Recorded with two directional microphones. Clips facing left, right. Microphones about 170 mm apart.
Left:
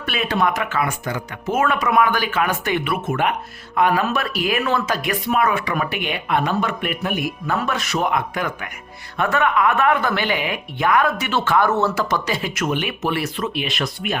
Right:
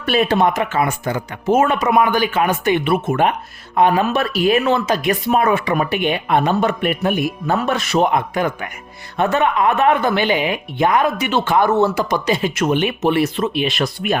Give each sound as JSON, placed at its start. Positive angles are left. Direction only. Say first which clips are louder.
{"t": 0.0, "sound": "speech", "louder": "right 6 dB", "side_deg": -35}